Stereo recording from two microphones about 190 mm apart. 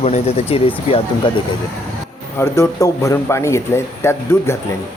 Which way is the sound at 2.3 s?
15° left (ahead or behind).